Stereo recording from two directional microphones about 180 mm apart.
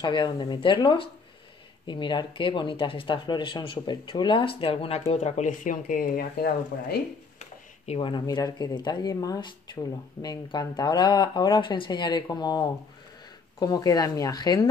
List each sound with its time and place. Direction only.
0.0 s speech: 25° left (ahead or behind); by 7.0 s 60° left (ahead or behind)
7.3 s speech: 35° left (ahead or behind)